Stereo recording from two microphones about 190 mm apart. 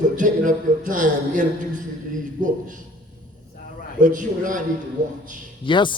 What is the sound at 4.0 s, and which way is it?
Speech, 45° right (ahead or behind).